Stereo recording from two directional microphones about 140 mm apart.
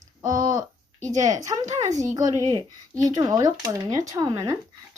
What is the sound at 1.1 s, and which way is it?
A child's voice, 25° right (ahead or behind).